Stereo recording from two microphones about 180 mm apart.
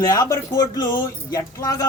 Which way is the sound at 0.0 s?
20° left (ahead or behind).